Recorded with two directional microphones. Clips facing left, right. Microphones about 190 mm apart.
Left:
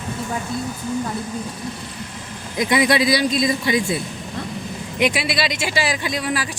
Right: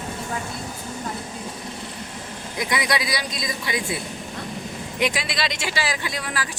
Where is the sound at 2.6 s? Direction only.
25° left (ahead or behind).